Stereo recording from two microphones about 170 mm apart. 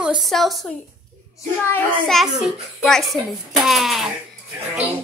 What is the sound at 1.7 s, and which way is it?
A woman's voice, 5° left (ahead or behind).